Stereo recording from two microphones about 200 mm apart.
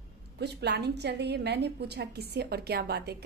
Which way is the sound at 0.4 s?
55° right (ahead or behind).